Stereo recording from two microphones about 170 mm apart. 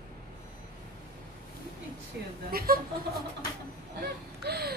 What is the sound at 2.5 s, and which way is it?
Speech, 60° right (ahead or behind).